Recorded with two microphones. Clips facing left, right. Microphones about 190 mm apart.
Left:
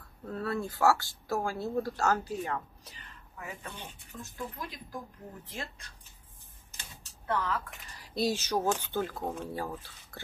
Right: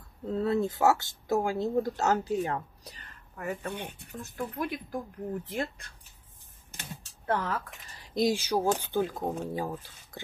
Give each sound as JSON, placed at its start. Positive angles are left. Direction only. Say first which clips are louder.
{"t": 0.2, "sound": "speech", "louder": "right 6 dB", "side_deg": -20}
{"t": 3.3, "sound": "speech", "louder": "right 8 dB", "side_deg": -55}
{"t": 6.7, "sound": "a sound", "louder": "right 8 dB", "side_deg": -55}
{"t": 8.0, "sound": "speech", "louder": "right 4 dB", "side_deg": -15}